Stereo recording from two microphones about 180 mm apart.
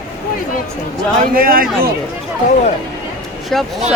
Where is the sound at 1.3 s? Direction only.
55° right (ahead or behind).